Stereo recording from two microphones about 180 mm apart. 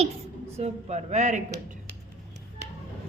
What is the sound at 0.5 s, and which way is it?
Speech, 40° right (ahead or behind).